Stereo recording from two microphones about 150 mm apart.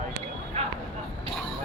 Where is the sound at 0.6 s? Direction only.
45° right (ahead or behind).